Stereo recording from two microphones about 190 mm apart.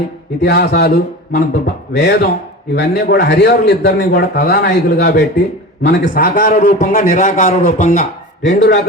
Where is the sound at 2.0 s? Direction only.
60° left (ahead or behind).